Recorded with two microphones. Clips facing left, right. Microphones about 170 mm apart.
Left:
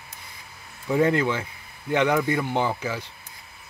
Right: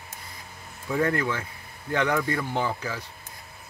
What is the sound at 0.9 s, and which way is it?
Speech, 20° left (ahead or behind).